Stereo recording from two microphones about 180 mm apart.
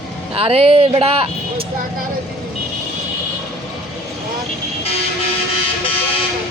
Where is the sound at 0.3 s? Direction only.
30° right (ahead or behind).